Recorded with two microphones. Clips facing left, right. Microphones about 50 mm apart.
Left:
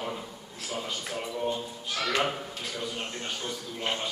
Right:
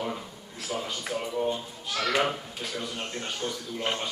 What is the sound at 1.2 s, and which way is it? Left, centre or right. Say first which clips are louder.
Speech: right 2 dB; centre.